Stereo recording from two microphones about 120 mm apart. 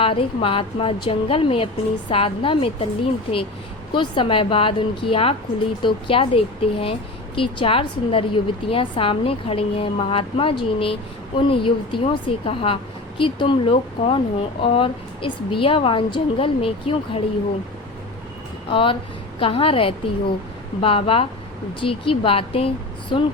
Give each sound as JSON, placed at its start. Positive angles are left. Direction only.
{"t": 0.0, "sound": "a woman's voice", "side_deg": 45}
{"t": 18.7, "sound": "a woman's voice", "side_deg": 45}